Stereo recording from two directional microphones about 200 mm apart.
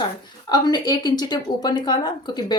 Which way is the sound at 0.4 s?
20° left (ahead or behind).